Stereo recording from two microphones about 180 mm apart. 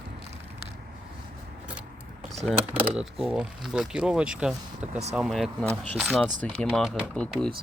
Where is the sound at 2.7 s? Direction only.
5° right (ahead or behind).